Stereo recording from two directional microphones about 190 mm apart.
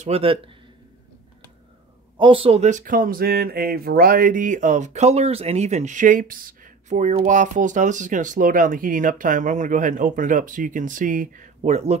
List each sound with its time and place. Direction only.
0.0 s speech: 30° right (ahead or behind)
2.1 s speech: 25° right (ahead or behind)